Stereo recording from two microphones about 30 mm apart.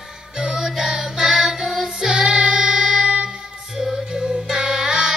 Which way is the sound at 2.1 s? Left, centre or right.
Right.